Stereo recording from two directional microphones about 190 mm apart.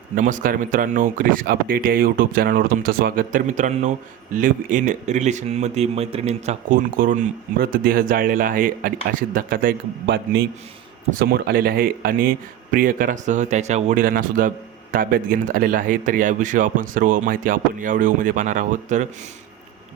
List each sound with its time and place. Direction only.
0.2 s speech: 40° right (ahead or behind)